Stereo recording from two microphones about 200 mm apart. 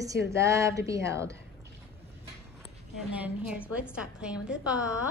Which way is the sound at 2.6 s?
5° right (ahead or behind).